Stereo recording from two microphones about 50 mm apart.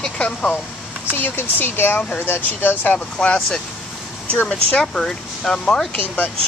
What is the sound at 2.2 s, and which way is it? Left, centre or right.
Speech, left.